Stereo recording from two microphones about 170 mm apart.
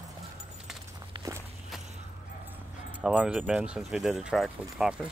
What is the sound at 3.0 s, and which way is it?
Speech, 5° right (ahead or behind).